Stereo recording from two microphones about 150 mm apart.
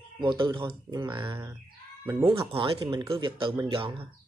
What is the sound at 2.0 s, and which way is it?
Speech, 15° right (ahead or behind).